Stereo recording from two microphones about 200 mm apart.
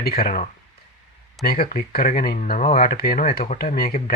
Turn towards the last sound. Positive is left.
turn(degrees=50)  # may be behind; listen again after turning